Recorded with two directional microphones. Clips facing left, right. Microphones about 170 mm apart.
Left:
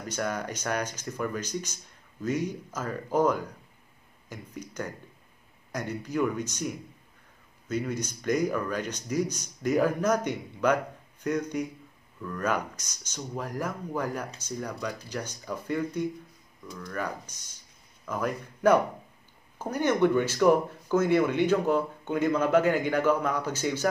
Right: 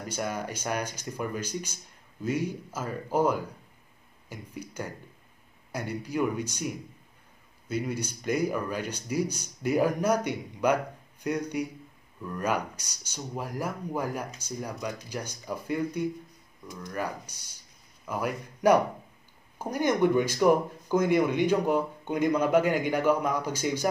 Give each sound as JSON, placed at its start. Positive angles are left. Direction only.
{"t": 0.1, "sound": "speech", "side_deg": -10}